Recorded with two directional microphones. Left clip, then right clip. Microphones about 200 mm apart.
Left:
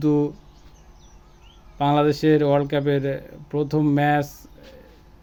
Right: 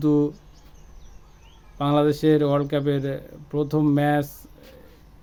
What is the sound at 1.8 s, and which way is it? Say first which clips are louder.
Speech: left 2 dB; 10° right (ahead or behind).